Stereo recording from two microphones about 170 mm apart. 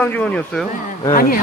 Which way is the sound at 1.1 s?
55° left (ahead or behind).